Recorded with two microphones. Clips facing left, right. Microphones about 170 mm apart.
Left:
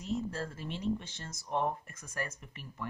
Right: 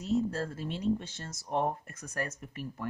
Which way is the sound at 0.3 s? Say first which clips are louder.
Right 4 dB; 45° right (ahead or behind).